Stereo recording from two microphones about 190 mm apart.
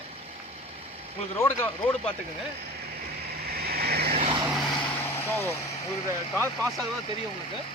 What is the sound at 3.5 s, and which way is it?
Vehicle, 55° right (ahead or behind).